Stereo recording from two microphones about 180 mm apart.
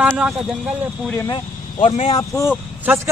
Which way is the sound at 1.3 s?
35° left (ahead or behind).